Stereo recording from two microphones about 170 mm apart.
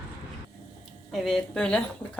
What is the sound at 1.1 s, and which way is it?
Speech, centre (ahead or behind).